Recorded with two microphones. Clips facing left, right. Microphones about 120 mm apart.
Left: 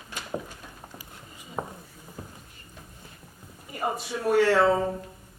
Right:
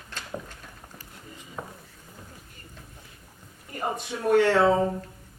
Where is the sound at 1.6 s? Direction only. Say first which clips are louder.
Left 5 dB; 30° left (ahead or behind).